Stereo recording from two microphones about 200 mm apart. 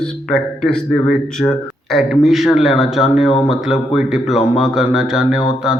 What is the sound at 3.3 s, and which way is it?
Speech, 30° left (ahead or behind).